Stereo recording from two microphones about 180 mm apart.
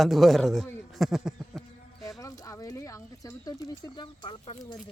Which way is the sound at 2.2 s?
20° left (ahead or behind).